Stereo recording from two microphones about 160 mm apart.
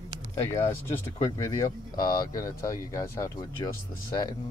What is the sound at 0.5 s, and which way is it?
Speech, 15° left (ahead or behind).